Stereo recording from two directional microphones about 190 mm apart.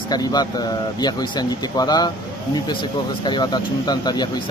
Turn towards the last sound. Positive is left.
turn(degrees=20)  # may be behind; listen again after turning